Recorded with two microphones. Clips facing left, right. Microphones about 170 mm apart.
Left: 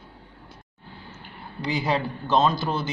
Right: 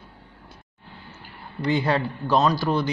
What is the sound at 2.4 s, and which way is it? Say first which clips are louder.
Speech: even; 25° left (ahead or behind).